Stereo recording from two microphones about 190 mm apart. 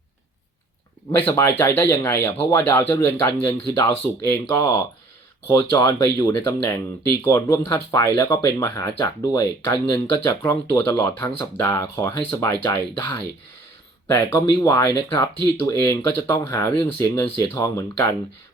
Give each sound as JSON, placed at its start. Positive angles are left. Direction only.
{"t": 1.3, "sound": "speech", "side_deg": 10}